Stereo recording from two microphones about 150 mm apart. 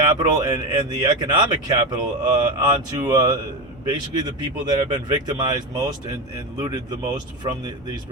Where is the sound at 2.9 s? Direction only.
25° right (ahead or behind).